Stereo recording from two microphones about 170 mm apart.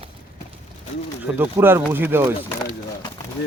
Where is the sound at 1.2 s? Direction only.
10° right (ahead or behind).